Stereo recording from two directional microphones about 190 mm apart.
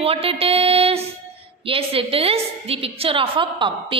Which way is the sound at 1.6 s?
30° right (ahead or behind).